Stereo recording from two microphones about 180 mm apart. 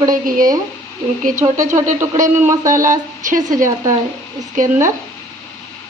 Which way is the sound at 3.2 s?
45° right (ahead or behind).